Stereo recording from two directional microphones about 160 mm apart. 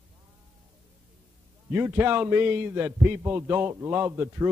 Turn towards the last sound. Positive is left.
turn(degrees=-15)  # may be behind; listen again after turning